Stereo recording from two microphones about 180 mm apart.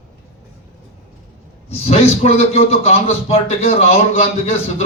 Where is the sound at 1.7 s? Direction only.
35° left (ahead or behind).